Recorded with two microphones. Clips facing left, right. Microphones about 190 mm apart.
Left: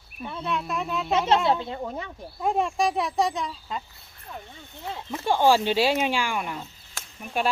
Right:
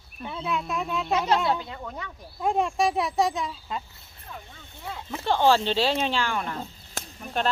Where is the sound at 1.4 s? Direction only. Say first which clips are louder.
Left 3 dB; 25° left (ahead or behind).